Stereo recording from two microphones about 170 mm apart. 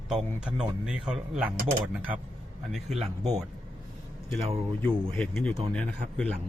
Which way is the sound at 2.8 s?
40° right (ahead or behind).